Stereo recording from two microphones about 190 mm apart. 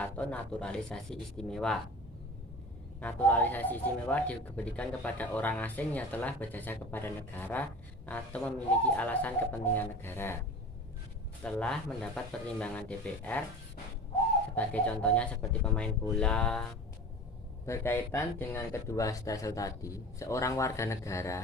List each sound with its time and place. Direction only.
0.0 s speech: 5° left (ahead or behind)
3.0 s speech: 10° left (ahead or behind)
11.4 s speech: 5° left (ahead or behind)
14.5 s speech: 10° left (ahead or behind)
17.7 s speech: 15° left (ahead or behind)